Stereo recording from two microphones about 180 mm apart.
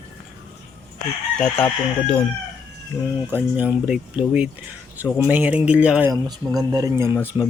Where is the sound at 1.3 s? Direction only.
10° left (ahead or behind).